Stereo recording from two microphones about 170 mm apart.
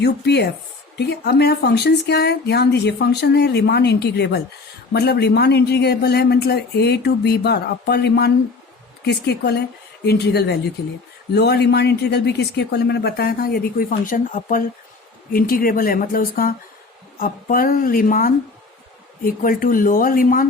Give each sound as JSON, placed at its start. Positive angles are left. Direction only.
{"t": 0.0, "sound": "speech", "side_deg": 75}